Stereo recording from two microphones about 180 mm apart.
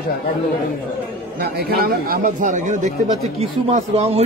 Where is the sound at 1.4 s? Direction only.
60° right (ahead or behind); by 4.2 s 35° right (ahead or behind).